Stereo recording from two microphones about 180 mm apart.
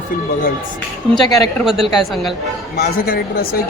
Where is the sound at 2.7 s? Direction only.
55° left (ahead or behind).